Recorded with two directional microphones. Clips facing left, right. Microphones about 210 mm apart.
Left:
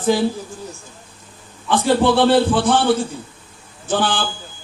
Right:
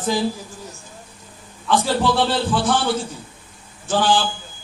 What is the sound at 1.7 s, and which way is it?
A man's voice, 55° left (ahead or behind).